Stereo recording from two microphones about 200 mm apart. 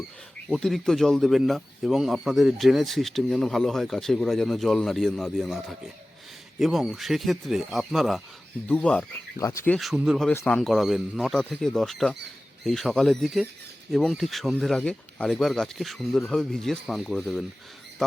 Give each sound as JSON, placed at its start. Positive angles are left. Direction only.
{"t": 0.5, "sound": "speech", "side_deg": 0}
{"t": 9.7, "sound": "speech", "side_deg": 0}